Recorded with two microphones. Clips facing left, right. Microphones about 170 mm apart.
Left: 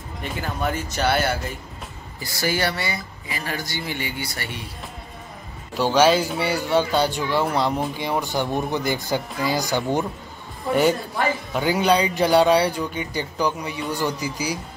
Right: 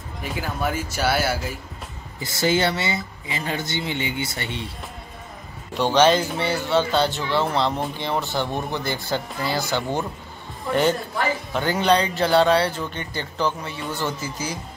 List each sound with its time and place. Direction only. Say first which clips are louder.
0.2 s speech: even; 5° right (ahead or behind)
2.1 s speech: right 3 dB; 20° right (ahead or behind)
5.8 s speech: even; 5° left (ahead or behind)
8.5 s speech: left 3 dB; 5° left (ahead or behind)
8.7 s speech: left 2 dB; 15° left (ahead or behind)